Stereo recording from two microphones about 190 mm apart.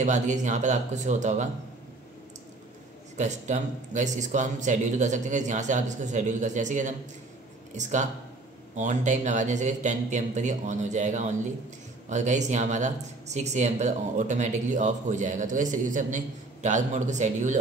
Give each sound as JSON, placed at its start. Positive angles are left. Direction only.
{"t": 0.0, "sound": "speech", "side_deg": -40}
{"t": 3.2, "sound": "speech", "side_deg": -40}